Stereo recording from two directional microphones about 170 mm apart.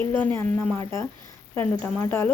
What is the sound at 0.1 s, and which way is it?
Speech, 10° left (ahead or behind).